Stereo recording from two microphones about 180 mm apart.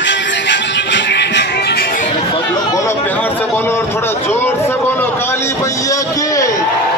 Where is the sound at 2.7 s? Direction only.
15° left (ahead or behind).